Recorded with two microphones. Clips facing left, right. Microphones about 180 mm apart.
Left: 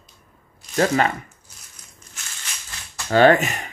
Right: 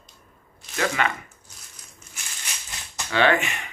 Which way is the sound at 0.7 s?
40° left (ahead or behind).